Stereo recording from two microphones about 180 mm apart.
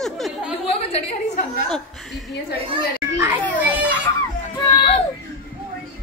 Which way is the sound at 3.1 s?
10° right (ahead or behind).